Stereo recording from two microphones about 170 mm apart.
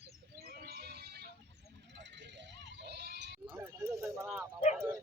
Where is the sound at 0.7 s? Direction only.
70° right (ahead or behind).